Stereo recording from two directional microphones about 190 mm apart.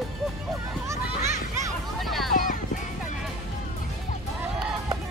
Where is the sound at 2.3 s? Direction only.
45° left (ahead or behind).